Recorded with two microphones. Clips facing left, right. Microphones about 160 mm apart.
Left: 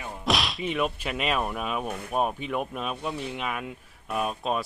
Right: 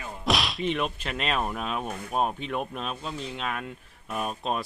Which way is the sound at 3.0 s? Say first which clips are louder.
Left 3 dB; 65° left (ahead or behind).